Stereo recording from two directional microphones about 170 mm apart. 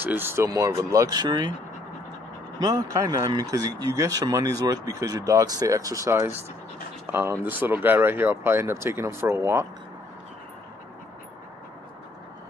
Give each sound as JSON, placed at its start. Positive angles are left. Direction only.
{"t": 0.0, "sound": "speech", "side_deg": -10}
{"t": 2.6, "sound": "speech", "side_deg": -20}